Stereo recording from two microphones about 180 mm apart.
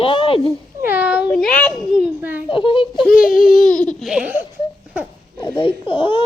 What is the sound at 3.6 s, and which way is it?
Laughter, 5° left (ahead or behind).